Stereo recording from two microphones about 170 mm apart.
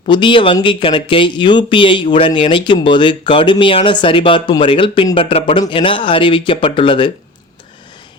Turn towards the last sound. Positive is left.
turn(degrees=30)  # may be behind; listen again after turning